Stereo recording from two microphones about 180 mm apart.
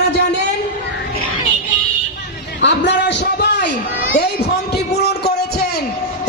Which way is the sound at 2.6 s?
75° left (ahead or behind).